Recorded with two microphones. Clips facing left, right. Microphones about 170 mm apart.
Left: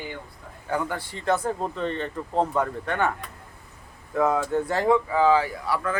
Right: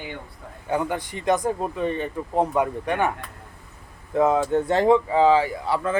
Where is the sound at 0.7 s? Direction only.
20° right (ahead or behind).